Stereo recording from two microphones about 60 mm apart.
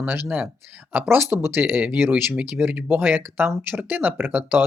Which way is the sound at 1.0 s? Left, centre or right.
Right.